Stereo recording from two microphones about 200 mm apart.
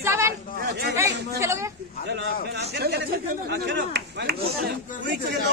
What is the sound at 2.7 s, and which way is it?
Speech, 55° right (ahead or behind).